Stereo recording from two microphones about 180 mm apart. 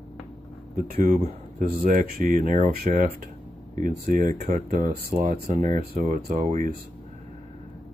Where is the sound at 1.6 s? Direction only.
55° right (ahead or behind).